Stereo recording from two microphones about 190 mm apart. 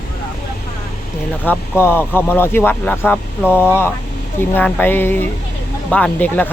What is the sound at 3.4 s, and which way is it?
Speech, 5° right (ahead or behind).